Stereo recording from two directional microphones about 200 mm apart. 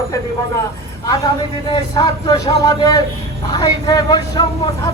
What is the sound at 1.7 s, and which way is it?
Speech, 25° left (ahead or behind).